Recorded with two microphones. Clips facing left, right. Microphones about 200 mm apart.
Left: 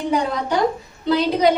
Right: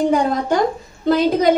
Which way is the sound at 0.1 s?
45° right (ahead or behind).